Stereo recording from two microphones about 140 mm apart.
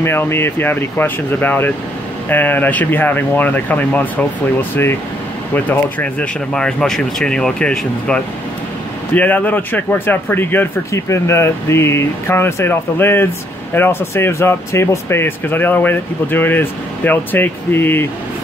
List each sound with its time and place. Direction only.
0.0 s speech: 15° left (ahead or behind)